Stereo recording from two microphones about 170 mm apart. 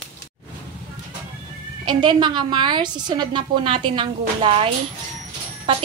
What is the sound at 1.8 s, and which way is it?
A woman's voice, 25° right (ahead or behind).